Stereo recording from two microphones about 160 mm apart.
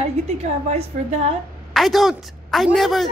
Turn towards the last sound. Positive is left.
turn(degrees=0)  # may be behind; listen again after turning